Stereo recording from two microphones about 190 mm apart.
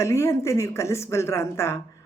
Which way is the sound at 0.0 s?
15° left (ahead or behind).